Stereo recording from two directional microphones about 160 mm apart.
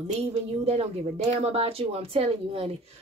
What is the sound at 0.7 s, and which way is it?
Speech, 40° right (ahead or behind).